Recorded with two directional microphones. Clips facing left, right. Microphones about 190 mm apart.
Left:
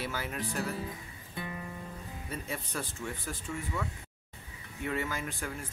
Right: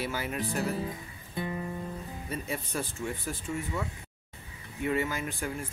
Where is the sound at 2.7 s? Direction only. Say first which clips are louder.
Right 4 dB; 15° right (ahead or behind).